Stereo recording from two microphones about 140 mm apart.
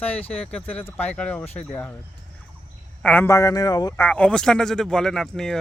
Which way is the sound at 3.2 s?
20° left (ahead or behind).